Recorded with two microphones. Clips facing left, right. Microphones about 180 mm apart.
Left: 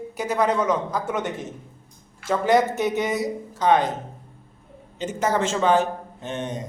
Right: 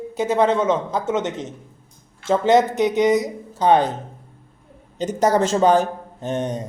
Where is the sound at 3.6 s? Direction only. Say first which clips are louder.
Right 3 dB; 30° right (ahead or behind).